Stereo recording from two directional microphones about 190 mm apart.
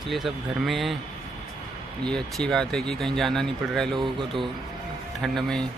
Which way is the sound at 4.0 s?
25° right (ahead or behind).